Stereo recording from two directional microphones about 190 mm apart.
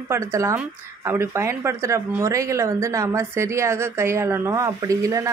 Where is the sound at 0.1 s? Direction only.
15° right (ahead or behind).